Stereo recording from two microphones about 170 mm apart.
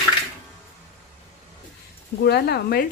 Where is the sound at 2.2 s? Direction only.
70° left (ahead or behind).